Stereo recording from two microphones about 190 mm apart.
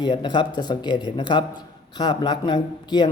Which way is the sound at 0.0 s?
25° left (ahead or behind).